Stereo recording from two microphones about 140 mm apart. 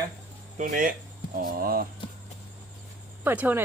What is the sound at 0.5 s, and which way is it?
Speech, 75° right (ahead or behind).